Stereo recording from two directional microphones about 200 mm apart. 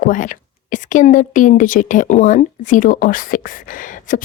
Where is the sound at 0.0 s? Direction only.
40° left (ahead or behind).